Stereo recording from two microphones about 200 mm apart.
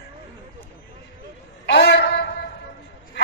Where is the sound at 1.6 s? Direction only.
60° left (ahead or behind).